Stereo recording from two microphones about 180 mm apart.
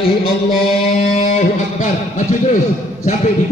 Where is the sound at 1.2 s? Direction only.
40° left (ahead or behind).